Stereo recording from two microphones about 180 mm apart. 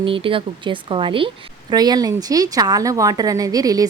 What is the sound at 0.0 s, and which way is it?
A woman's voice, 30° right (ahead or behind).